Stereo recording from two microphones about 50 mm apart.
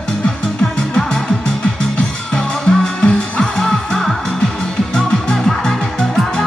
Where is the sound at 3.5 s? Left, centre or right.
Centre.